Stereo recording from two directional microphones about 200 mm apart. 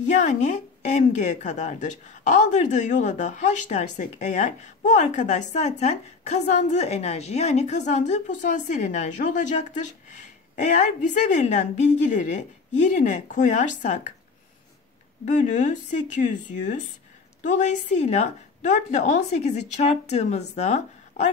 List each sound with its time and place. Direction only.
0.1 s a woman's voice: 35° left (ahead or behind)
15.2 s a woman's voice: 40° left (ahead or behind)